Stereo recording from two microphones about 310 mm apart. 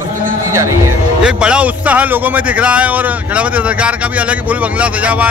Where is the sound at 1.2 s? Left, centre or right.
Centre.